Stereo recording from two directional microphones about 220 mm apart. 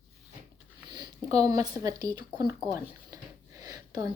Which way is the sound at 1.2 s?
15° right (ahead or behind).